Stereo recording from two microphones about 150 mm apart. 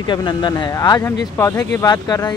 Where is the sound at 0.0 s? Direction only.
30° left (ahead or behind).